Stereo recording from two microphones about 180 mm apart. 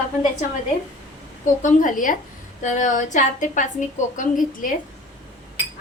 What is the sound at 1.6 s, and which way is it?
A woman's voice, 45° left (ahead or behind).